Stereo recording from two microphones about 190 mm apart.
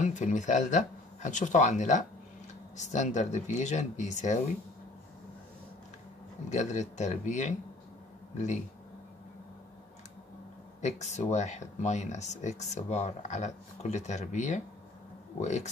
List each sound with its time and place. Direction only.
0.0 s speech: 40° left (ahead or behind)
6.5 s speech: 40° left (ahead or behind)
10.8 s speech: 35° left (ahead or behind)